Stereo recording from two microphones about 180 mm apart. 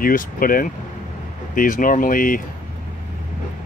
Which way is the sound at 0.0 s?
50° left (ahead or behind).